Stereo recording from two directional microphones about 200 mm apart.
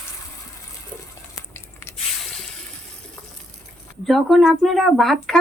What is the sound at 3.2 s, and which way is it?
Water, 15° left (ahead or behind).